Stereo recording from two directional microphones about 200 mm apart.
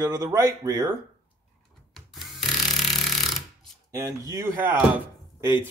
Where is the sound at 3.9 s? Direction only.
15° right (ahead or behind).